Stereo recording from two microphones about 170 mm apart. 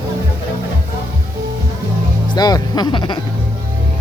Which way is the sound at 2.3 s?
25° left (ahead or behind).